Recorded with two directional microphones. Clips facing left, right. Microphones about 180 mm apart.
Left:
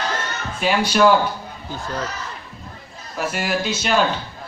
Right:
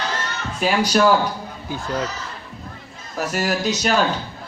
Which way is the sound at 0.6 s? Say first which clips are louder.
Right 1 dB; 40° right (ahead or behind).